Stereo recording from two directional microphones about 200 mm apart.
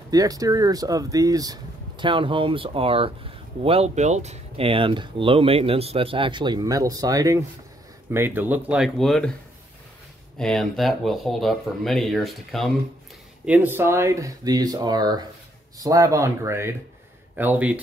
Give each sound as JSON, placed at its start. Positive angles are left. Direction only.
{"t": 0.1, "sound": "speech", "side_deg": -20}
{"t": 10.3, "sound": "speech", "side_deg": 0}